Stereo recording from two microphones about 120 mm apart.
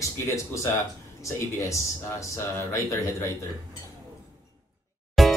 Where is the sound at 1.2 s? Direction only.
25° left (ahead or behind).